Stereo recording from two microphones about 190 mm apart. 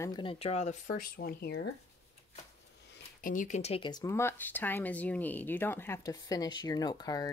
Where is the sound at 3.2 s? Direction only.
45° left (ahead or behind); by 7.3 s 20° left (ahead or behind).